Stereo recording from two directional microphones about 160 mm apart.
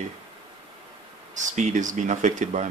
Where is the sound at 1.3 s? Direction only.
50° right (ahead or behind).